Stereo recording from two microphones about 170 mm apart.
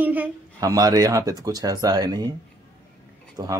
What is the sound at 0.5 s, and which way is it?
Speech, 20° right (ahead or behind).